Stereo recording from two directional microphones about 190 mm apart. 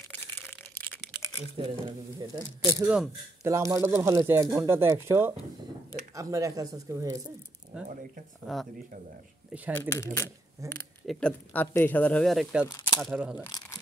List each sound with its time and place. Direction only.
0.5 s a sound: 10° left (ahead or behind)
1.6 s speech: 25° right (ahead or behind)
2.8 s speech: 5° right (ahead or behind)
7.7 s speech: 5° right (ahead or behind)
9.8 s speech: 15° left (ahead or behind)
10.6 s speech: 15° right (ahead or behind)
11.1 s speech: 5° left (ahead or behind)
12.6 s speech: 15° left (ahead or behind)
13.0 s speech: 5° right (ahead or behind)
13.4 s speech: 20° left (ahead or behind)